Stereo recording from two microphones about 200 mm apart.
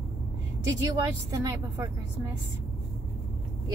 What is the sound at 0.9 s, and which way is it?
Speech, 15° right (ahead or behind).